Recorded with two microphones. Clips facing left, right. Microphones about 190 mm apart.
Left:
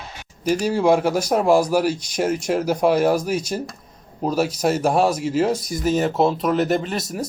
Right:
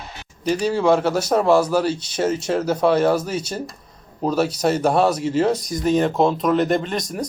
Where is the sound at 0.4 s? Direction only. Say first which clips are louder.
Even; 10° left (ahead or behind).